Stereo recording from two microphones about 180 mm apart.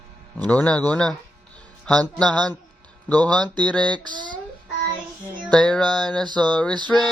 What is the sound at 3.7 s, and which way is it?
Speech, 5° left (ahead or behind).